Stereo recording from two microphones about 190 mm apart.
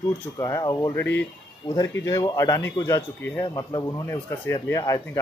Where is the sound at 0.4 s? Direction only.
15° left (ahead or behind).